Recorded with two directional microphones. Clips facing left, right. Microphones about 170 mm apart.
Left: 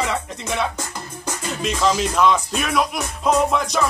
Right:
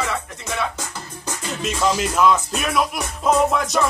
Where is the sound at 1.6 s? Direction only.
5° right (ahead or behind).